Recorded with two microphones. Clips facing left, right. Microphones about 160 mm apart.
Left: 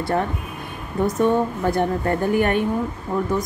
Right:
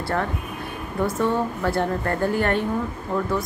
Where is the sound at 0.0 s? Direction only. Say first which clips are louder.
Left 3 dB; 20° left (ahead or behind).